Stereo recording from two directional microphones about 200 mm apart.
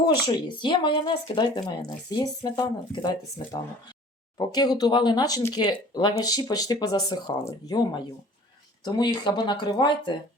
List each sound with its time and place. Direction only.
0.3 s speech: 25° left (ahead or behind)